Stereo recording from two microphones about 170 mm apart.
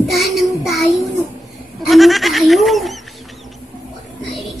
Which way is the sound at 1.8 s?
Centre (ahead or behind).